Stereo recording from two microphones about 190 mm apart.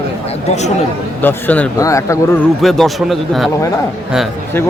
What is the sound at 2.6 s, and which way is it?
Speech, centre (ahead or behind).